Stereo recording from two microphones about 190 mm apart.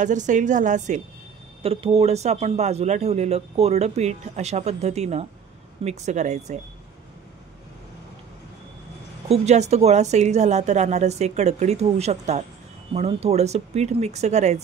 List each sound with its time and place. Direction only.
0.0 s a man's voice: 40° right (ahead or behind)
9.3 s a man's voice: 35° right (ahead or behind)